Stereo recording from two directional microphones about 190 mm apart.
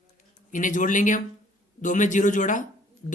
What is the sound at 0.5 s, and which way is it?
Speech, 45° left (ahead or behind).